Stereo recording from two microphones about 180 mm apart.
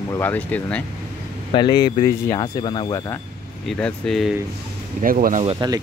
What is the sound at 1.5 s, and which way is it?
Speech, 25° left (ahead or behind).